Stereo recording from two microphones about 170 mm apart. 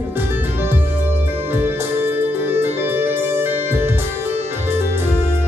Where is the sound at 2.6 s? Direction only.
15° right (ahead or behind).